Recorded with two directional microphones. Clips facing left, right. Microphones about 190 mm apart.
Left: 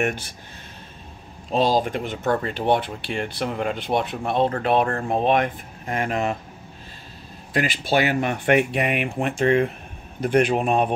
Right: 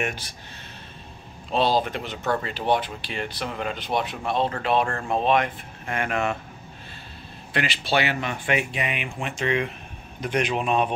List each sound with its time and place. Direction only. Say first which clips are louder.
1.5 s speech: left 2 dB; 45° left (ahead or behind)
4.8 s speech: left 2 dB; 40° left (ahead or behind)
5.9 s speech: left 2 dB; 35° left (ahead or behind)
7.5 s speech: left 3 dB; 45° left (ahead or behind)